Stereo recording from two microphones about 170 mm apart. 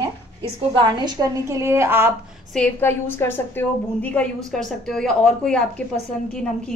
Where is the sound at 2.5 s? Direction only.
10° left (ahead or behind).